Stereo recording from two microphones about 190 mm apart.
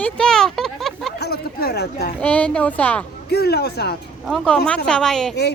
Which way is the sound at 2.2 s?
5° left (ahead or behind).